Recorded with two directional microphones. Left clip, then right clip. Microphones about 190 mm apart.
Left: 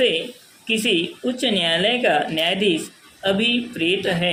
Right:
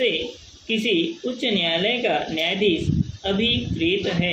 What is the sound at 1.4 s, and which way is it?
Speech, 30° left (ahead or behind).